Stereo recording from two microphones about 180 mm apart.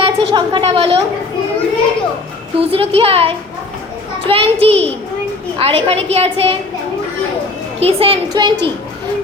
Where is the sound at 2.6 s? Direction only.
30° right (ahead or behind).